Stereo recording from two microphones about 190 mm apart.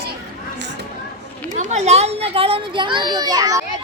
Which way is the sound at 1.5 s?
40° right (ahead or behind).